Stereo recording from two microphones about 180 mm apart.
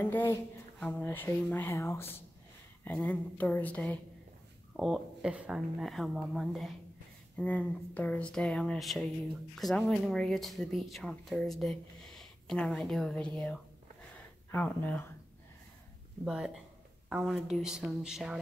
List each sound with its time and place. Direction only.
0.0 s speech: 10° left (ahead or behind)
16.3 s speech: 5° right (ahead or behind)